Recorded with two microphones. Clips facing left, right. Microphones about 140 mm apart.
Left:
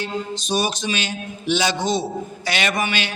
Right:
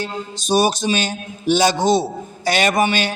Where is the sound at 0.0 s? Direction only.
40° right (ahead or behind).